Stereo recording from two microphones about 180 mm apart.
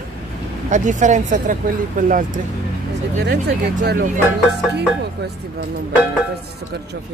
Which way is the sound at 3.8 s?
60° right (ahead or behind).